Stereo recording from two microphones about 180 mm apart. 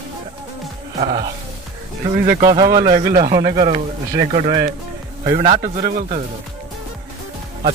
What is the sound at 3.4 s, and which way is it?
Speech, 50° right (ahead or behind).